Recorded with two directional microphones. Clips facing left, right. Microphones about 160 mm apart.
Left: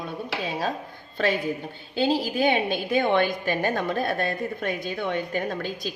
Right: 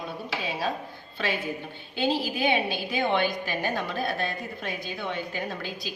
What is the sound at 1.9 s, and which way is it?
A woman's voice, 40° left (ahead or behind).